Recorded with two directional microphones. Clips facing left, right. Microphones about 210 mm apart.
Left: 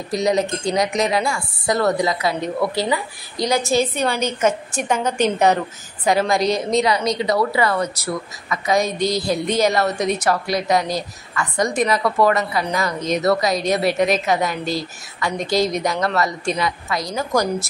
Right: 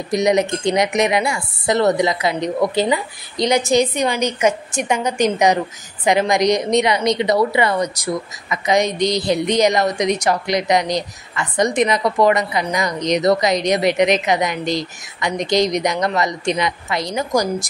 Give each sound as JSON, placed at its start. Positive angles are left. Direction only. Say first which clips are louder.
{"t": 0.1, "sound": "a woman's voice", "louder": "right 3 dB", "side_deg": -20}